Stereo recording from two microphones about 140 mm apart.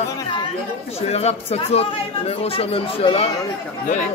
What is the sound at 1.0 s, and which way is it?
Speech, 50° left (ahead or behind).